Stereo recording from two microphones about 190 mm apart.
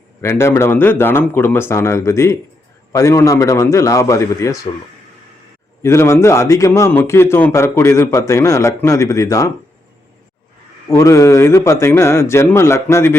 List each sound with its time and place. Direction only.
0.2 s a man's voice: 15° left (ahead or behind)
5.8 s a man's voice: 15° left (ahead or behind)
10.8 s a man's voice: 15° left (ahead or behind)